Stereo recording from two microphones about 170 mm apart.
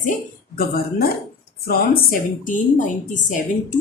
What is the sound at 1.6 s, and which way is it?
A woman's voice, 55° left (ahead or behind).